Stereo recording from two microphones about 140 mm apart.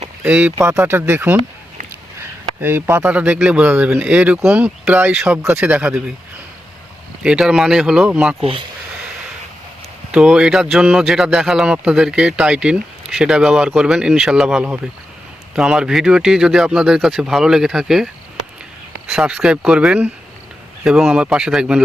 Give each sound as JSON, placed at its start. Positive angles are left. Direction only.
{"t": 0.2, "sound": "speech", "side_deg": -15}
{"t": 7.2, "sound": "speech", "side_deg": -5}
{"t": 8.4, "sound": "speech", "side_deg": -40}
{"t": 10.1, "sound": "speech", "side_deg": -5}
{"t": 19.1, "sound": "speech", "side_deg": -5}